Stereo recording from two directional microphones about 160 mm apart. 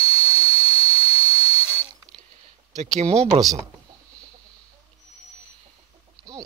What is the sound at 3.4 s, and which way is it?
Speech, 20° right (ahead or behind).